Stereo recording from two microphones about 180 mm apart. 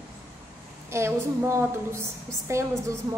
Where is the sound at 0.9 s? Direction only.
15° right (ahead or behind).